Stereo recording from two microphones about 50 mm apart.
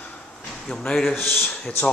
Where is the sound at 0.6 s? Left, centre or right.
Centre.